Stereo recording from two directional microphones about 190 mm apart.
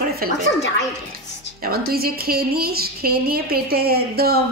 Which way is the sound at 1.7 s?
50° right (ahead or behind).